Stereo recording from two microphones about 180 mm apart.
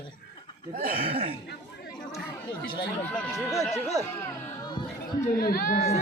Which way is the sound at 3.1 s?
Centre (ahead or behind).